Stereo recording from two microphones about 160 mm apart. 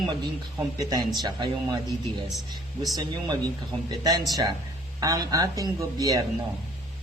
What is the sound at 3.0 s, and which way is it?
Speech, 25° right (ahead or behind).